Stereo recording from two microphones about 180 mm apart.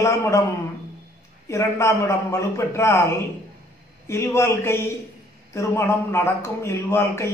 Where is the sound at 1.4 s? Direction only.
15° left (ahead or behind).